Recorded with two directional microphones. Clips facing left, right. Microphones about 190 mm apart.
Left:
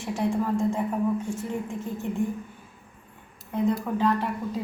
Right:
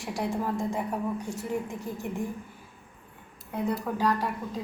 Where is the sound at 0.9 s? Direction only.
15° right (ahead or behind).